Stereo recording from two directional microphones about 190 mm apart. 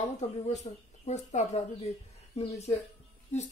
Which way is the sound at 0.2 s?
30° left (ahead or behind).